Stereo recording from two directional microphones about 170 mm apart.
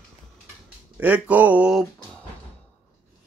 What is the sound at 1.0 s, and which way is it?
Speech, 10° right (ahead or behind).